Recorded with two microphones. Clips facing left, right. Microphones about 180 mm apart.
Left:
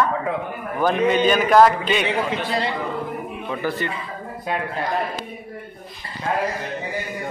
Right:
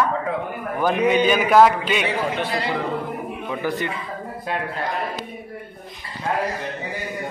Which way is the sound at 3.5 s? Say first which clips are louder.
Even; 15° right (ahead or behind).